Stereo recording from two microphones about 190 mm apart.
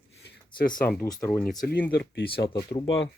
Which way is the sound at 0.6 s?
50° left (ahead or behind).